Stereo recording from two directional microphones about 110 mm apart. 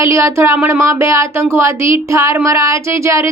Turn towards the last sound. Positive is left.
turn(degrees=-25)  # may be behind; listen again after turning